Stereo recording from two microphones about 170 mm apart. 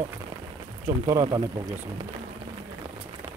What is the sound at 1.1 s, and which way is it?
Speech, 25° right (ahead or behind).